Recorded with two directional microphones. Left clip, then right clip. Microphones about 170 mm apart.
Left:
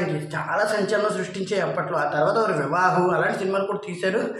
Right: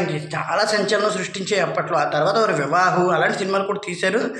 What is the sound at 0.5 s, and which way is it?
A man's voice, 20° right (ahead or behind).